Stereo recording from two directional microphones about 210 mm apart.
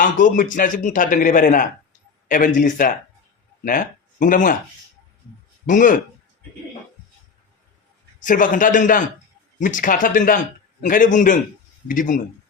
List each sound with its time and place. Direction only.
0.0 s a man's voice: 40° left (ahead or behind)
5.6 s a man's voice: 40° left (ahead or behind)
8.2 s a man's voice: 40° left (ahead or behind)